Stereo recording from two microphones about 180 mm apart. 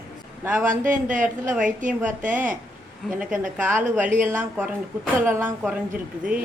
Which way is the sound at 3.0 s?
5° right (ahead or behind).